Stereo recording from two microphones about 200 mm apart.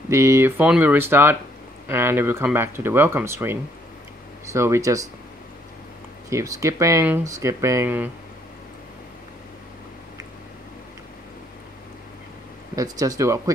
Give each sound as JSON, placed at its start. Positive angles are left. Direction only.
{"t": 0.1, "sound": "speech", "side_deg": -15}
{"t": 6.3, "sound": "speech", "side_deg": -15}
{"t": 12.7, "sound": "speech", "side_deg": -15}